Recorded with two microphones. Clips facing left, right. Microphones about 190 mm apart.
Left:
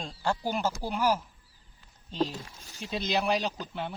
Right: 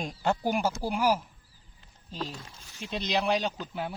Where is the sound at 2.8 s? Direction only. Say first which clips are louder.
Even; centre (ahead or behind).